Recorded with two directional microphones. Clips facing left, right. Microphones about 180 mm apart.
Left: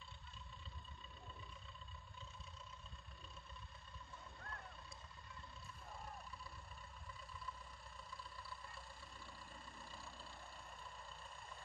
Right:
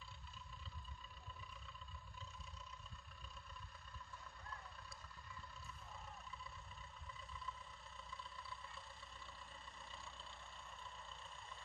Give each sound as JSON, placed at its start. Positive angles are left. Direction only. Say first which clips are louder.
{"t": 4.4, "sound": "vehicle", "louder": "left 2 dB", "side_deg": 55}
{"t": 8.2, "sound": "vehicle", "louder": "even", "side_deg": 0}